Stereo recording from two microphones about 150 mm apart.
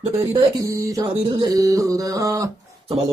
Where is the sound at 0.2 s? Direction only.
20° right (ahead or behind).